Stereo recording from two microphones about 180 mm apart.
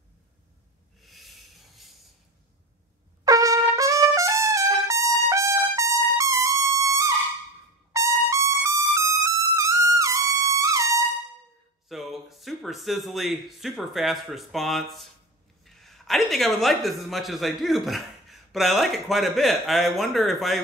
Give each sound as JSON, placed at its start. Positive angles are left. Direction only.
{"t": 1.0, "sound": "a sound", "side_deg": 0}
{"t": 3.3, "sound": "trumpet", "side_deg": -20}
{"t": 11.9, "sound": "a man's voice", "side_deg": 0}